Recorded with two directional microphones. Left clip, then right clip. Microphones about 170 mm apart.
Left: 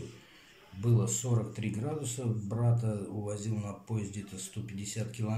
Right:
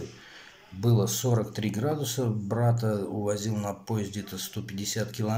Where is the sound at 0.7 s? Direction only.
20° right (ahead or behind).